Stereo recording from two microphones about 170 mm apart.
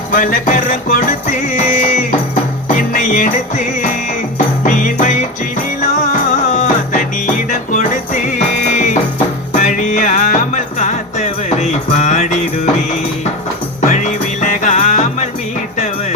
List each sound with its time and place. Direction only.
0.1 s music: 50° left (ahead or behind)